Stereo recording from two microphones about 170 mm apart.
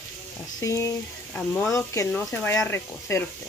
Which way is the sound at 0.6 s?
20° left (ahead or behind).